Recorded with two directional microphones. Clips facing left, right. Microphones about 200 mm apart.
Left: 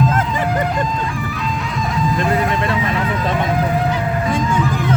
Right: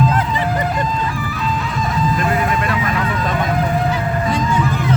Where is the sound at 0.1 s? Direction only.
45° left (ahead or behind).